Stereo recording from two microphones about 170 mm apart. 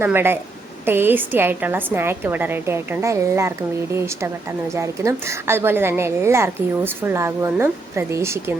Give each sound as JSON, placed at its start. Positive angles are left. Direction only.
{"t": 0.0, "sound": "a woman's voice", "side_deg": -15}